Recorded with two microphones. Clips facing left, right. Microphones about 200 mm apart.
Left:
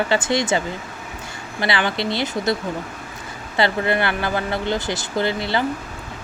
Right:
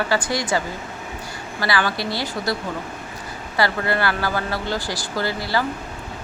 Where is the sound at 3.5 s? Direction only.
20° left (ahead or behind).